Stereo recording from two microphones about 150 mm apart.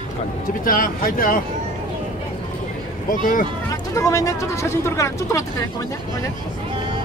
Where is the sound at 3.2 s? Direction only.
65° left (ahead or behind).